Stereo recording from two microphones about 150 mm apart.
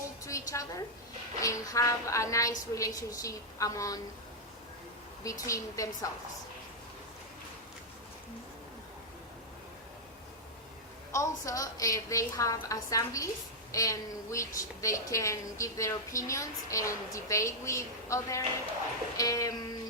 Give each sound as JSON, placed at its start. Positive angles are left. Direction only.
{"t": 0.3, "sound": "a woman's voice", "side_deg": 20}
{"t": 5.2, "sound": "a woman's voice", "side_deg": 20}
{"t": 11.1, "sound": "a woman's voice", "side_deg": 20}